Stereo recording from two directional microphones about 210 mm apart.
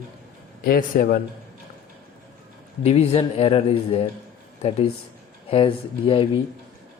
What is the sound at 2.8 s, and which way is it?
A man's voice, 30° left (ahead or behind).